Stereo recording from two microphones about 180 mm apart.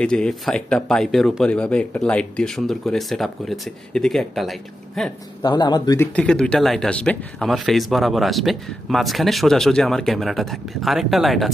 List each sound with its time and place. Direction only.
0.0 s speech: 5° left (ahead or behind)
5.4 s speech: 25° left (ahead or behind)
6.1 s speech: 5° left (ahead or behind)